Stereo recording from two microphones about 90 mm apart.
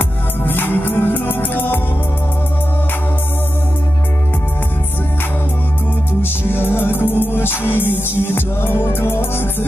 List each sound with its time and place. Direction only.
0.0 s music: 25° left (ahead or behind)
6.2 s music: 25° left (ahead or behind)